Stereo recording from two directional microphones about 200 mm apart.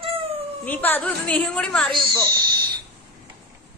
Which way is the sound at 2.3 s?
20° right (ahead or behind).